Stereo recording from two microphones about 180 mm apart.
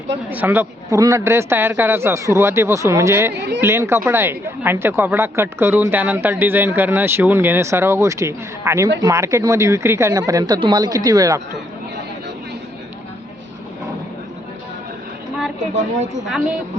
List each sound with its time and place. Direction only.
0.3 s speech: 10° right (ahead or behind)
15.7 s a woman's voice: 40° right (ahead or behind)